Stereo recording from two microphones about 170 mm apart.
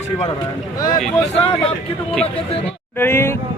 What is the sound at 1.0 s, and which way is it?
Speech, 5° left (ahead or behind).